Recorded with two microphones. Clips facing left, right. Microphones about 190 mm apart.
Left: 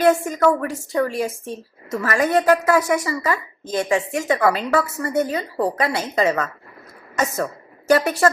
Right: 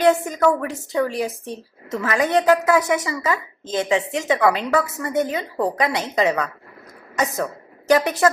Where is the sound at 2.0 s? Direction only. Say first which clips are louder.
Even; centre (ahead or behind).